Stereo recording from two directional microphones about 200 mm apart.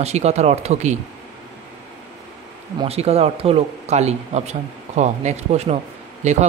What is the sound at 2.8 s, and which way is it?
Speech, 30° right (ahead or behind).